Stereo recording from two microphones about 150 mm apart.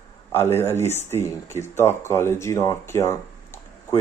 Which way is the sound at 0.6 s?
15° left (ahead or behind).